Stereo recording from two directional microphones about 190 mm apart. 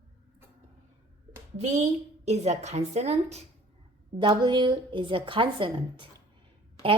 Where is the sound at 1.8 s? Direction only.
35° right (ahead or behind).